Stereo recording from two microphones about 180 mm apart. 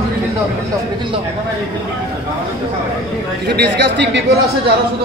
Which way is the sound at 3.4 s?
65° right (ahead or behind).